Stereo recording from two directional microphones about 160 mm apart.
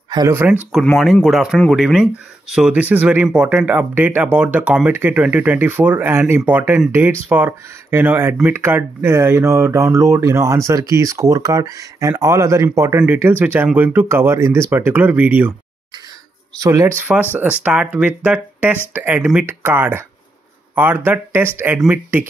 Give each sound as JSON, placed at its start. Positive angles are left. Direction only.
{"t": 0.3, "sound": "speech", "side_deg": -10}
{"t": 0.7, "sound": "speech", "side_deg": 0}
{"t": 16.5, "sound": "speech", "side_deg": -20}